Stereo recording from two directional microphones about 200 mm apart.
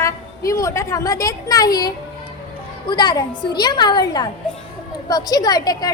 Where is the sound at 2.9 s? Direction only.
20° left (ahead or behind).